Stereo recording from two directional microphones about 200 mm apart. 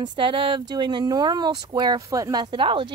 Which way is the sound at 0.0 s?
25° right (ahead or behind).